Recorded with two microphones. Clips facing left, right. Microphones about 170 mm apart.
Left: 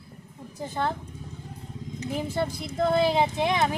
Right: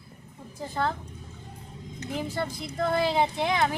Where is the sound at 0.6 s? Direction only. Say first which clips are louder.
Even; 20° left (ahead or behind).